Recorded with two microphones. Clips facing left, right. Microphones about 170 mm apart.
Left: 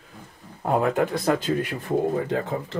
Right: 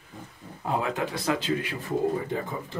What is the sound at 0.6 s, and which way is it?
Speech, 50° left (ahead or behind).